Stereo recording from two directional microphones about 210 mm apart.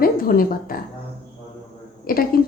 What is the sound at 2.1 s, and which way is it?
Speech, 45° left (ahead or behind).